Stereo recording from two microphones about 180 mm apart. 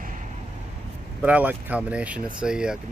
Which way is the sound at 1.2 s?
10° right (ahead or behind).